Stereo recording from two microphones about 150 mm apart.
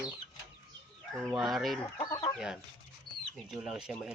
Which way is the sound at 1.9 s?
25° left (ahead or behind).